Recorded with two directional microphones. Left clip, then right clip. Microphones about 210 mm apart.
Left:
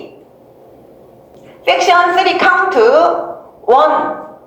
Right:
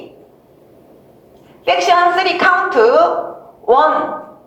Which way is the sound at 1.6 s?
25° left (ahead or behind).